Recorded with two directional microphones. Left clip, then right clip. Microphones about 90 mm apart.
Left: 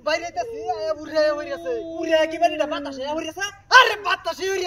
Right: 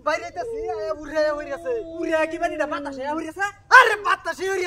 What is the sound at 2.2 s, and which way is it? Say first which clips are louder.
A man's voice: left 3 dB; 20° right (ahead or behind).